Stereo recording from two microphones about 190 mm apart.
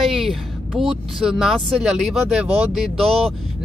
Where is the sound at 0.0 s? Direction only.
Centre (ahead or behind).